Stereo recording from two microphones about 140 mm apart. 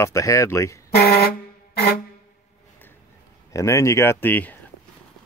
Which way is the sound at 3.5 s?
25° left (ahead or behind).